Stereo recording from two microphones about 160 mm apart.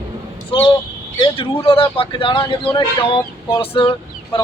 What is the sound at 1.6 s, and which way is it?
Chicken, 35° left (ahead or behind).